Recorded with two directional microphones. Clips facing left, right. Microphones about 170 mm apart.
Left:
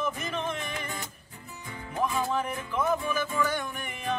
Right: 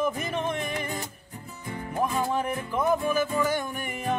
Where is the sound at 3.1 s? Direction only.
40° right (ahead or behind).